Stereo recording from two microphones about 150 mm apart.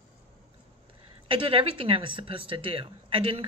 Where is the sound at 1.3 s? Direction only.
35° right (ahead or behind).